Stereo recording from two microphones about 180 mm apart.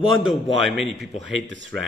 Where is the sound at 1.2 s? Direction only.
85° right.